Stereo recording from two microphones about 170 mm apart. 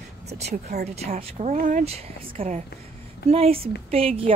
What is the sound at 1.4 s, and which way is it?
Speech, 45° right (ahead or behind).